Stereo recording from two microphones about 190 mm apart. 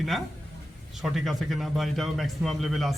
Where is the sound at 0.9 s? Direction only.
Centre (ahead or behind).